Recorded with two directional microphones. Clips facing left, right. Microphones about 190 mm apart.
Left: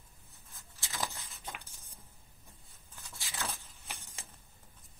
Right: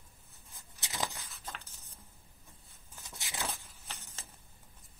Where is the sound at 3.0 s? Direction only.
20° right (ahead or behind).